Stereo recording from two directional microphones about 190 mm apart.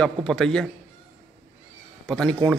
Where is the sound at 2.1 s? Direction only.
5° left (ahead or behind).